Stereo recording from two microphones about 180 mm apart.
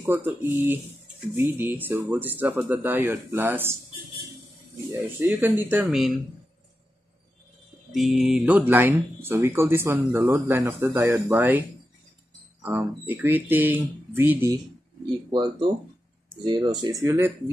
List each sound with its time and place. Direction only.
0.0 s speech: 10° right (ahead or behind)
5.2 s speech: 10° right (ahead or behind)
7.9 s speech: centre (ahead or behind)
12.6 s speech: 10° right (ahead or behind)
15.3 s speech: 25° right (ahead or behind)